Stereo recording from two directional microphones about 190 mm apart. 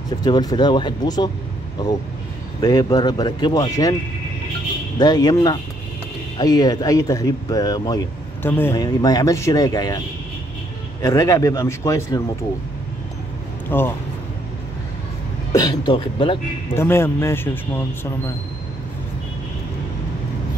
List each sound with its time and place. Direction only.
0.2 s speech: 20° left (ahead or behind)
2.6 s speech: 20° left (ahead or behind)
4.9 s speech: 20° left (ahead or behind)
11.0 s a man's voice: 20° left (ahead or behind)
13.7 s speech: 10° left (ahead or behind)
15.5 s speech: 20° left (ahead or behind)
16.7 s a man's voice: 15° left (ahead or behind)